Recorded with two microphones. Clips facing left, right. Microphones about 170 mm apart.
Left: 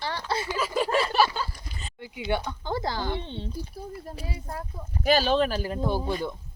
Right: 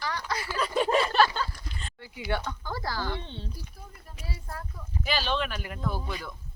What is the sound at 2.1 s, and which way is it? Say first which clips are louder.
Speech: left 3 dB; 20° left (ahead or behind).